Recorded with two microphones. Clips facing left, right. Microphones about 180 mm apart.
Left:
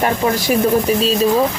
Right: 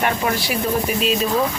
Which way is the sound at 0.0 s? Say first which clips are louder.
Left 4 dB; 45° left (ahead or behind).